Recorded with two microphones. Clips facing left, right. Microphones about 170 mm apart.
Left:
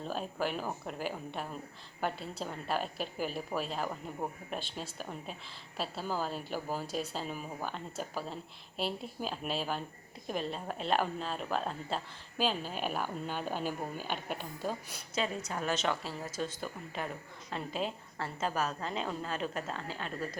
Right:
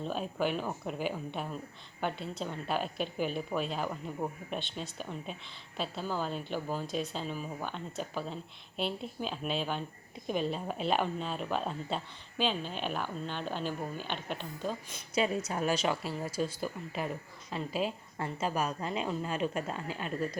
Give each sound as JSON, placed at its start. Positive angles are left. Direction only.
{"t": 0.0, "sound": "a woman's voice", "side_deg": 0}
{"t": 15.4, "sound": "speech", "side_deg": -20}
{"t": 15.8, "sound": "a woman's voice", "side_deg": -10}